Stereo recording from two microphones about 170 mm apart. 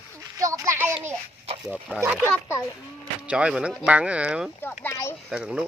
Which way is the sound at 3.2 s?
5° right (ahead or behind).